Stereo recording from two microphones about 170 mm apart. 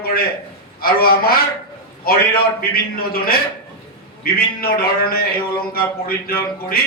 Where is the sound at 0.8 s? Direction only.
60° left (ahead or behind).